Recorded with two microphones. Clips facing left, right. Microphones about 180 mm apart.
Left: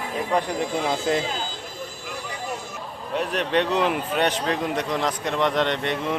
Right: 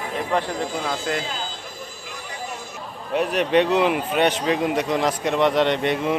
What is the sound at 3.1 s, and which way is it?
A man's voice, 10° right (ahead or behind).